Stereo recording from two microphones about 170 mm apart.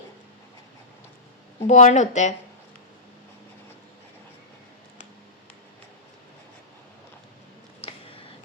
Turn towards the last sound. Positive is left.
turn(degrees=35)  # may be behind; listen again after turning